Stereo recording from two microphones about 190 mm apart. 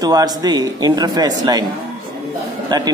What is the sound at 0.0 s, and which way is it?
A man's voice, 20° right (ahead or behind).